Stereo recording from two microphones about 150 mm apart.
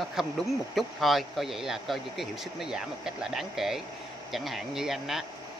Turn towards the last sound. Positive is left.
turn(degrees=0)  # may be behind; listen again after turning